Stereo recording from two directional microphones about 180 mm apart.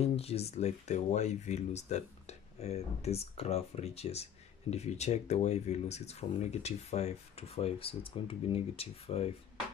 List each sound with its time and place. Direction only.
0.0 s speech: 35° left (ahead or behind)